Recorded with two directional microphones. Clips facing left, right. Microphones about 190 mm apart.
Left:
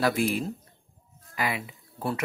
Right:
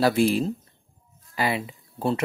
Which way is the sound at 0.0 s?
30° right (ahead or behind).